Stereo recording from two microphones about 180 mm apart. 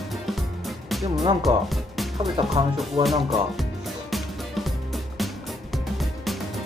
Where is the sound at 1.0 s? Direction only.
20° right (ahead or behind).